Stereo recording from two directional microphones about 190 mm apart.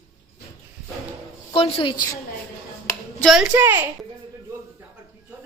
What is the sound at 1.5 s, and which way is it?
Speech, 30° left (ahead or behind).